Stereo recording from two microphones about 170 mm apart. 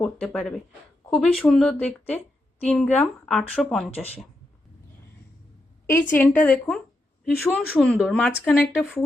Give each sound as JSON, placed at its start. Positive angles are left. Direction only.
{"t": 0.0, "sound": "a woman's voice", "side_deg": 5}
{"t": 3.9, "sound": "speech", "side_deg": 35}
{"t": 5.8, "sound": "a woman's voice", "side_deg": 10}